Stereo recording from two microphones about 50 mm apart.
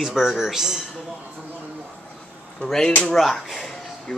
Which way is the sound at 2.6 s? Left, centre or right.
Left.